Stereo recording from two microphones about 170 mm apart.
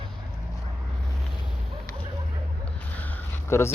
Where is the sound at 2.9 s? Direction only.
10° left (ahead or behind).